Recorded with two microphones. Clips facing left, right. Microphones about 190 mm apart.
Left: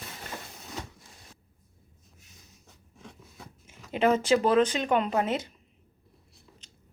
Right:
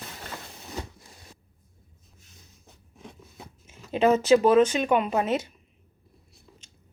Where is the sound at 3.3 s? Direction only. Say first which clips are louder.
Right 2 dB; 25° right (ahead or behind).